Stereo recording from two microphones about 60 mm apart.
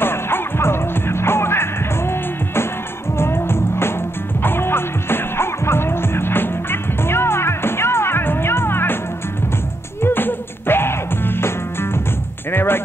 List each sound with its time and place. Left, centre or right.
0.0 s music: left
10.0 s music: left